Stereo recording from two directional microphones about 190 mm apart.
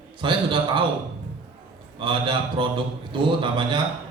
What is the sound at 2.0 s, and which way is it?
A man's voice, 25° right (ahead or behind).